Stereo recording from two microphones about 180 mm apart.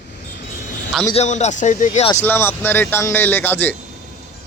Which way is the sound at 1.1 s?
40° left (ahead or behind).